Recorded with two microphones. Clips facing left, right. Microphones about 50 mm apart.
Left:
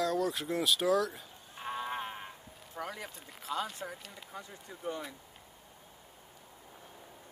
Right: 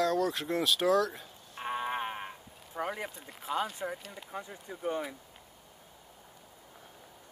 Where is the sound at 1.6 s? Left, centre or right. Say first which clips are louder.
Right 3 dB; right.